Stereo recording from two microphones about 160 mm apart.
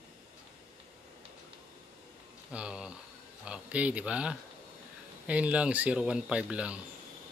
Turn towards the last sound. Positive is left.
turn(degrees=-5)  # may be behind; listen again after turning